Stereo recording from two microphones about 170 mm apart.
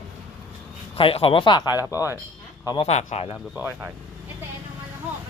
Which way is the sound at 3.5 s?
10° right (ahead or behind).